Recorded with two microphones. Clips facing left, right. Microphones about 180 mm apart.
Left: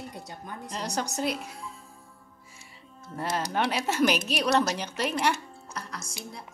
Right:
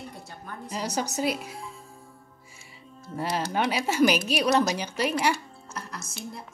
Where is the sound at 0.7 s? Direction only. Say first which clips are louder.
Right 2 dB; 5° right (ahead or behind).